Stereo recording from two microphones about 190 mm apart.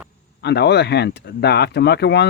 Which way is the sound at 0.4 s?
60° left (ahead or behind).